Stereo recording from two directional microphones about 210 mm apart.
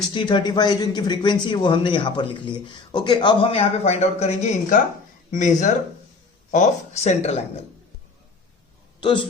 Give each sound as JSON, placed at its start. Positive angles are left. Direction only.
{"t": 0.1, "sound": "speech", "side_deg": 20}
{"t": 9.0, "sound": "a man's voice", "side_deg": 25}